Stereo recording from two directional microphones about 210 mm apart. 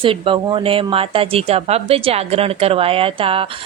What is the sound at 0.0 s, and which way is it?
Speech, 25° right (ahead or behind).